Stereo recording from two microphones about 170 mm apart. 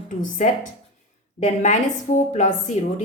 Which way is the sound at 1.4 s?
45° left (ahead or behind).